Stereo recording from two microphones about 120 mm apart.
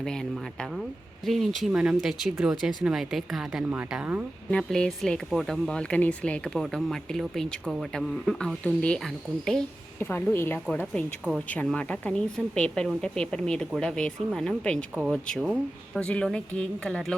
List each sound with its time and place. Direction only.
0.0 s speech: 5° left (ahead or behind); by 4.2 s 10° right (ahead or behind)
4.5 s speech: 5° left (ahead or behind)
10.0 s a woman's voice: 20° left (ahead or behind)
10.7 s speech: 10° left (ahead or behind)